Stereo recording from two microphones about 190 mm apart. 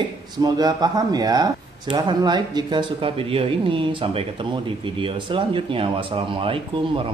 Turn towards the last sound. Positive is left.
turn(degrees=-25)  # may be behind; listen again after turning